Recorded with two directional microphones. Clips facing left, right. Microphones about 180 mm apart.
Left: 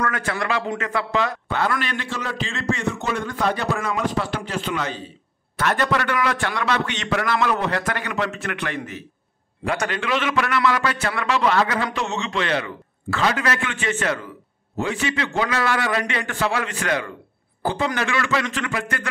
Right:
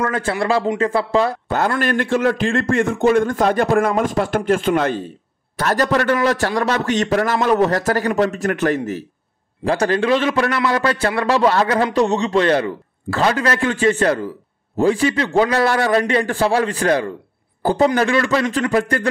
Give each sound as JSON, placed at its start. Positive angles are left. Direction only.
{"t": 0.0, "sound": "a man's voice", "side_deg": -30}
{"t": 1.8, "sound": "a man's voice", "side_deg": -50}
{"t": 5.6, "sound": "a man's voice", "side_deg": -35}